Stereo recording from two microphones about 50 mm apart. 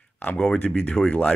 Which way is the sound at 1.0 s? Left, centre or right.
Left.